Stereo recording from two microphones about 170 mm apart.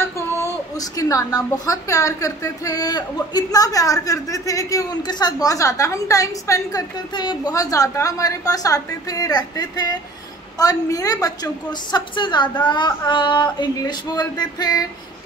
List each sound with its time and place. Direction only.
0.7 s a woman's voice: 20° left (ahead or behind)